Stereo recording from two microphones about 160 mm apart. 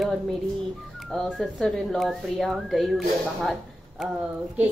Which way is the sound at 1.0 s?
Centre (ahead or behind).